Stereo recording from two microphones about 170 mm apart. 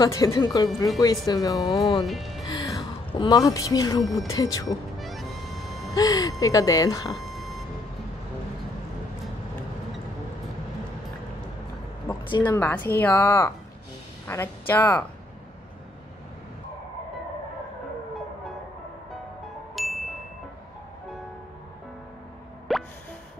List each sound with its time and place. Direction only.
0.0 s speech: 20° left (ahead or behind)
2.0 s speech: centre (ahead or behind)
2.4 s music: 20° left (ahead or behind)
3.1 s speech: 25° left (ahead or behind)
4.9 s music: centre (ahead or behind)
5.9 s speech: 20° left (ahead or behind)
7.3 s vehicle: centre (ahead or behind)
12.1 s a sound: 25° left (ahead or behind)
12.4 s speech: 10° left (ahead or behind)
19.4 s ding: centre (ahead or behind)
22.7 s plop: centre (ahead or behind)